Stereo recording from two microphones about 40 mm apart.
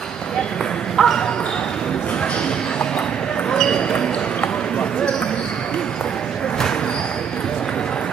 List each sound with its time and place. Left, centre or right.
0.9 s speech: centre
3.5 s basketball bounce: centre